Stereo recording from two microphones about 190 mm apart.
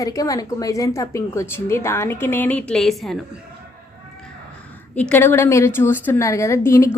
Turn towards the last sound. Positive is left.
turn(degrees=15)  # may be behind; listen again after turning